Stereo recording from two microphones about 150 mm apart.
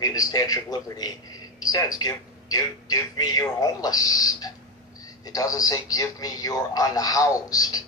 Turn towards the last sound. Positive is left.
turn(degrees=25)  # may be behind; listen again after turning